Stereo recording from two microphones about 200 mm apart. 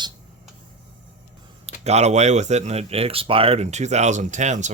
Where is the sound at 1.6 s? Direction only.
35° right (ahead or behind).